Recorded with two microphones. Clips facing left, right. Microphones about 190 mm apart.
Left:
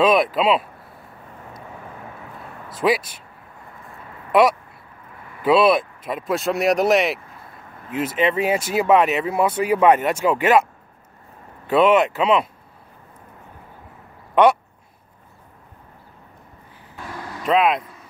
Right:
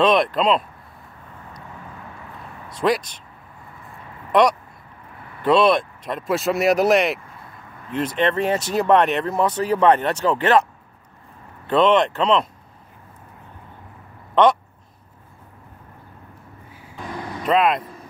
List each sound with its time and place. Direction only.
0.0 s speech: 5° left (ahead or behind)
2.7 s speech: 5° left (ahead or behind)
4.3 s speech: 5° left (ahead or behind)
14.3 s speech: 10° left (ahead or behind)
17.0 s vehicle: 20° right (ahead or behind)
17.4 s speech: centre (ahead or behind)